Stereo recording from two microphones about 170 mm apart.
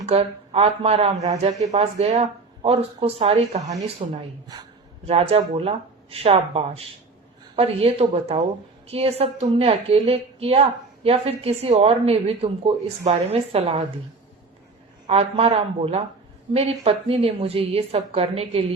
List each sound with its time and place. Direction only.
0.0 s a woman's voice: 35° right (ahead or behind)
15.0 s a woman's voice: 35° right (ahead or behind)